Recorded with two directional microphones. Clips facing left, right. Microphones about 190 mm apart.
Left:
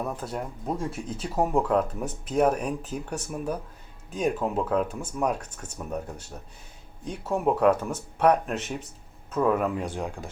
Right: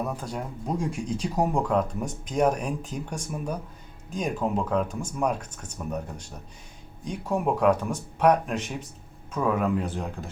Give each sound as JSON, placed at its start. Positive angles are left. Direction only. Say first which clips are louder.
{"t": 0.2, "sound": "speech", "louder": "even", "side_deg": 5}